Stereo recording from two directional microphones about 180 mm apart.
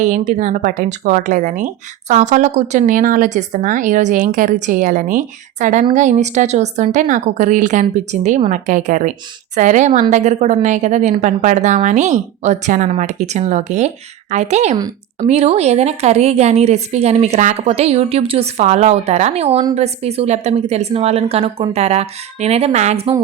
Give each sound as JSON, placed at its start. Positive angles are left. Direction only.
{"t": 0.0, "sound": "a woman's voice", "side_deg": -40}